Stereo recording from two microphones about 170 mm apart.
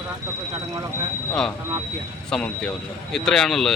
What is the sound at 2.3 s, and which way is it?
Speech, 5° left (ahead or behind).